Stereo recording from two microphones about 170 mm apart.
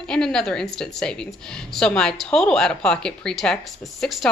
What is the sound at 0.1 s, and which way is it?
Speech, 5° left (ahead or behind).